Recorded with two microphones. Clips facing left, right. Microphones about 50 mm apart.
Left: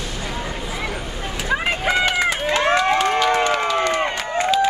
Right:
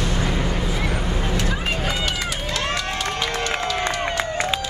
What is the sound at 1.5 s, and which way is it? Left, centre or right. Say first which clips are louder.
Run: left 4 dB; left.